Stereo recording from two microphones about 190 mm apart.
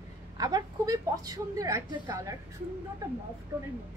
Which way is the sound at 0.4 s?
20° right (ahead or behind).